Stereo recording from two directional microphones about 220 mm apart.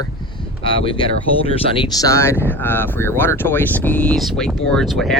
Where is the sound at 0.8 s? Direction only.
25° left (ahead or behind).